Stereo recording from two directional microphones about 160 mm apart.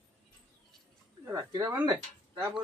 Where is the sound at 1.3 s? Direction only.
20° right (ahead or behind).